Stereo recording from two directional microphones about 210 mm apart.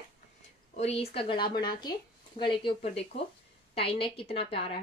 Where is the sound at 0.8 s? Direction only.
30° left (ahead or behind).